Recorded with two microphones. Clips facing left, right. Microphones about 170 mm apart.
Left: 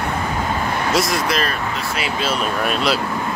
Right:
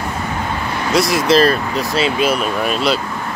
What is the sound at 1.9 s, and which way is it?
Speech, 20° right (ahead or behind).